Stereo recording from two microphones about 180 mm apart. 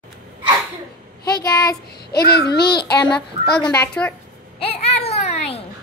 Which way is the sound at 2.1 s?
65° left (ahead or behind).